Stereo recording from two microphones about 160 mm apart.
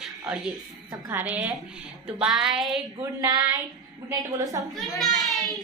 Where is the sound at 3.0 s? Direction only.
20° right (ahead or behind).